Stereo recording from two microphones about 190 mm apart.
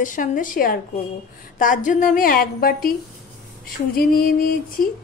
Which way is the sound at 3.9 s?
50° left (ahead or behind).